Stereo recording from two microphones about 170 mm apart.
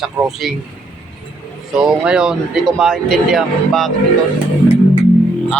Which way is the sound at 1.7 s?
5° right (ahead or behind).